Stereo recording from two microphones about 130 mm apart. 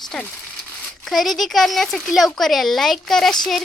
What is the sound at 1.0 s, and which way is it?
Speech, centre (ahead or behind).